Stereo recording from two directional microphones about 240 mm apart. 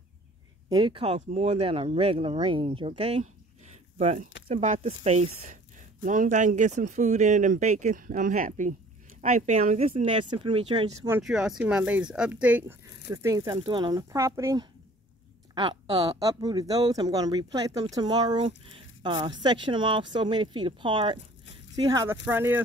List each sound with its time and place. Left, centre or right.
0.7 s speech: centre
11.1 s speech: centre